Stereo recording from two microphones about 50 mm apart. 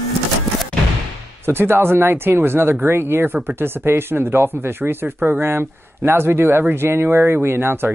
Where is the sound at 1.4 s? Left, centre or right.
Right.